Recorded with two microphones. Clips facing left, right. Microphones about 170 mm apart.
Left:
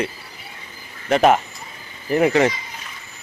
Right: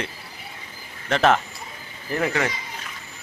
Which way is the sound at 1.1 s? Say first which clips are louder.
Left 4 dB; 10° left (ahead or behind).